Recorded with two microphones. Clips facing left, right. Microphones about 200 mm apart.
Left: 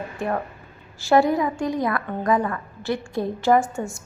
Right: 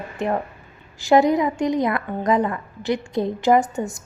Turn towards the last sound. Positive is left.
turn(degrees=-20)  # may be behind; listen again after turning